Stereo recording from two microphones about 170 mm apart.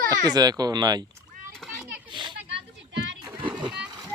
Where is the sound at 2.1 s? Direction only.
25° right (ahead or behind).